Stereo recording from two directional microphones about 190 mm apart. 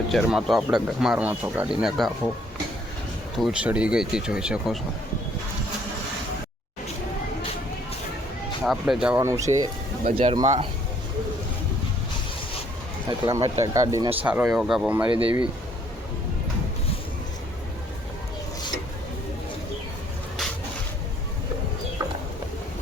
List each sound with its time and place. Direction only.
0.1 s speech: centre (ahead or behind)
3.3 s speech: 5° right (ahead or behind)
8.6 s speech: centre (ahead or behind); by 9.6 s 15° right (ahead or behind)
10.2 s speech: 30° right (ahead or behind)
13.1 s speech: 20° right (ahead or behind)
14.3 s speech: 5° right (ahead or behind)